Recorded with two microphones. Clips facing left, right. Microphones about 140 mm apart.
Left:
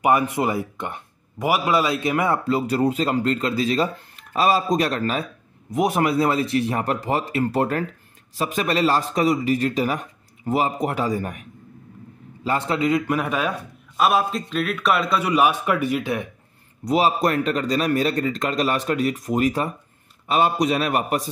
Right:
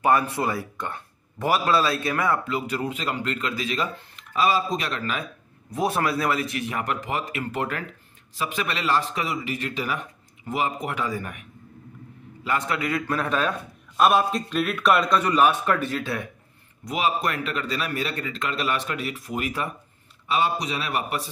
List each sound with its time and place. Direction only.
0.0 s a man's voice: 15° left (ahead or behind); by 5.2 s 35° left (ahead or behind)
5.7 s speech: 15° left (ahead or behind); by 11.4 s 35° left (ahead or behind)
12.4 s a man's voice: 30° left (ahead or behind); by 14.0 s 10° left (ahead or behind)
14.0 s a man's voice: centre (ahead or behind); by 16.3 s 15° left (ahead or behind)
16.8 s a man's voice: 35° left (ahead or behind)